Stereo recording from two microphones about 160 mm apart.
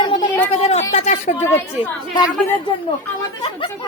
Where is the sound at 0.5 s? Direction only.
40° left (ahead or behind).